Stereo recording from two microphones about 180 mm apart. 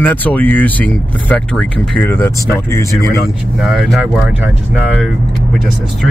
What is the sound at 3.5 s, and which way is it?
Speech, centre (ahead or behind).